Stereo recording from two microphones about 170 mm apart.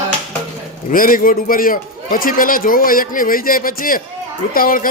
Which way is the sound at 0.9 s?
55° left (ahead or behind).